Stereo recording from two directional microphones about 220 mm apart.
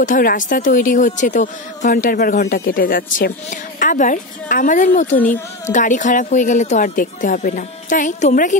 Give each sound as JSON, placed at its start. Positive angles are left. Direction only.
{"t": 0.0, "sound": "speech", "side_deg": 40}